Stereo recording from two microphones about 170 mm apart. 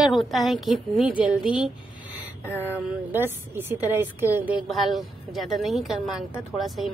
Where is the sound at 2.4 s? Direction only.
15° left (ahead or behind).